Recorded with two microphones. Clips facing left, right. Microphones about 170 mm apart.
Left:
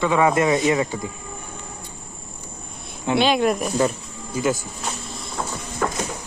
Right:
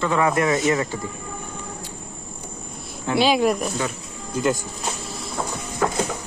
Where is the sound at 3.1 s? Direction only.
Centre (ahead or behind).